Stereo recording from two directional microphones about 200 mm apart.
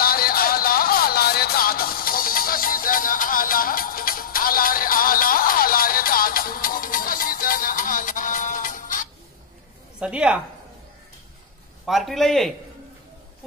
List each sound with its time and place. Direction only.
0.0 s music: 50° left (ahead or behind)
9.9 s a woman's voice: 5° right (ahead or behind)
11.8 s a man's voice: centre (ahead or behind)